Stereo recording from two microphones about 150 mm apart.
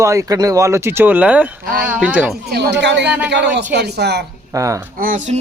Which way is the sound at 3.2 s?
90° right.